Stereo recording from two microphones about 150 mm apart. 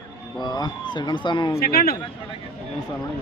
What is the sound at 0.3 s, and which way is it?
Speech, 30° left (ahead or behind).